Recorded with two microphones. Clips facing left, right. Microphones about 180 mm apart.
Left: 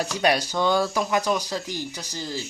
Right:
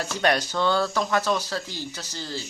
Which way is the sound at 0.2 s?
10° left (ahead or behind).